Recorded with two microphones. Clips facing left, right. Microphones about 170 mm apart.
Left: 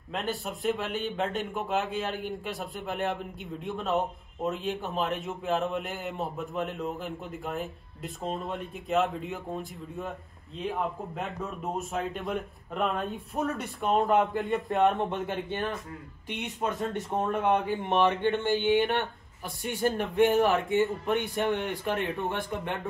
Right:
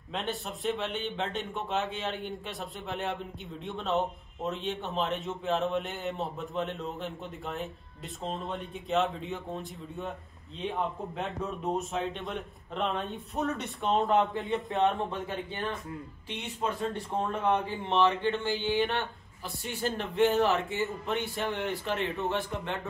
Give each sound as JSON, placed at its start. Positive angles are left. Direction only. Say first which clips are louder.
{"t": 0.1, "sound": "a man's voice", "louder": "left 2 dB", "side_deg": 0}
{"t": 16.3, "sound": "speech", "louder": "left 2 dB", "side_deg": 20}